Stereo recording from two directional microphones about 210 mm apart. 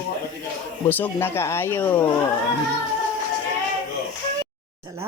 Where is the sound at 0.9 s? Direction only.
10° left (ahead or behind).